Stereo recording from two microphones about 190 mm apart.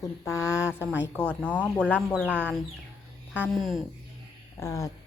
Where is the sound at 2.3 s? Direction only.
10° right (ahead or behind).